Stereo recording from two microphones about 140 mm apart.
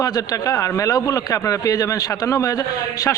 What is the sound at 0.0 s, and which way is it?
A man's voice, 25° left (ahead or behind).